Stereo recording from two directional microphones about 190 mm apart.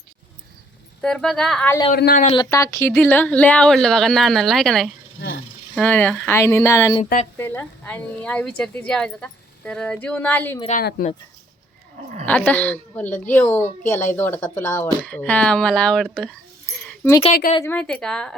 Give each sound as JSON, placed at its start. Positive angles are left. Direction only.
{"t": 1.0, "sound": "speech", "side_deg": 5}
{"t": 1.9, "sound": "speech", "side_deg": 50}
{"t": 2.3, "sound": "speech", "side_deg": 20}
{"t": 7.0, "sound": "a woman's voice", "side_deg": 40}
{"t": 7.3, "sound": "speech", "side_deg": 10}
{"t": 10.7, "sound": "speech", "side_deg": 50}
{"t": 12.2, "sound": "speech", "side_deg": 10}
{"t": 16.8, "sound": "a sound", "side_deg": 10}
{"t": 17.7, "sound": "speech", "side_deg": 10}